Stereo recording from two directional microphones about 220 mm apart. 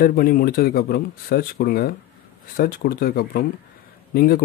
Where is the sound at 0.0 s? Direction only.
40° left (ahead or behind).